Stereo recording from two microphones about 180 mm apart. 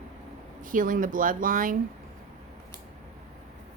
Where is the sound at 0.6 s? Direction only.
50° right (ahead or behind).